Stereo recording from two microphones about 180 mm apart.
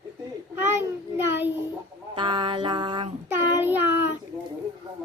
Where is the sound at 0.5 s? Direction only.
10° right (ahead or behind).